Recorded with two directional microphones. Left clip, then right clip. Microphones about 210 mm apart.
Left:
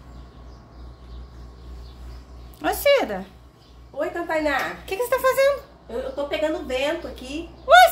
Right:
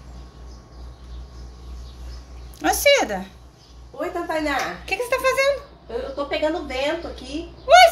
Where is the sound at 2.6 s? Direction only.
15° left (ahead or behind).